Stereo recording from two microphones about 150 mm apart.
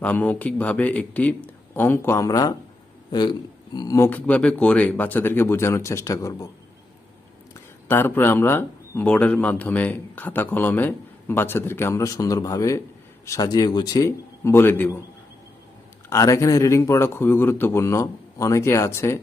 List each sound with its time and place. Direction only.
0.0 s speech: 10° left (ahead or behind)
7.5 s speech: 15° left (ahead or behind)
16.0 s speech: 20° left (ahead or behind)